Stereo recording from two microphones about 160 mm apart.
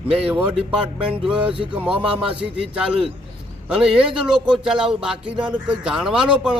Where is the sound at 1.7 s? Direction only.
5° right (ahead or behind).